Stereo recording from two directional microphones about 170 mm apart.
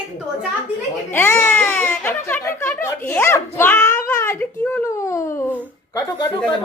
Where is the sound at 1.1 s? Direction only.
15° left (ahead or behind).